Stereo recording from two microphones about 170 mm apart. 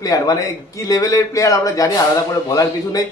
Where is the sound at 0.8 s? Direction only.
20° left (ahead or behind).